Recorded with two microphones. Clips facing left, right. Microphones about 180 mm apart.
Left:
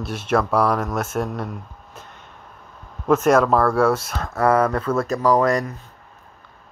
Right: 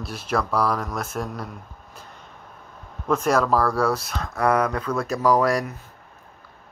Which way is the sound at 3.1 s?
5° left (ahead or behind).